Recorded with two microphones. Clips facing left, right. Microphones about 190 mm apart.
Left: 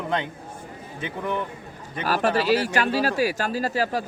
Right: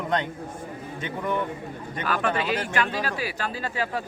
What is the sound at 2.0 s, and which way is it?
Speech, 35° left (ahead or behind).